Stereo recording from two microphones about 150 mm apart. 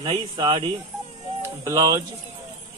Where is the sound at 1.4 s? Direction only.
20° right (ahead or behind).